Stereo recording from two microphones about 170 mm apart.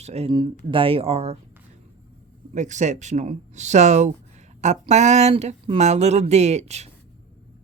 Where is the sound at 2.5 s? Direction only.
45° right (ahead or behind).